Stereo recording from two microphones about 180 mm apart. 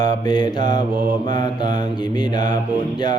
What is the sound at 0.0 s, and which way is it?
Mantra, 20° left (ahead or behind).